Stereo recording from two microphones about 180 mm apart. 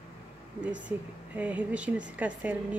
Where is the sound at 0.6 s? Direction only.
5° right (ahead or behind).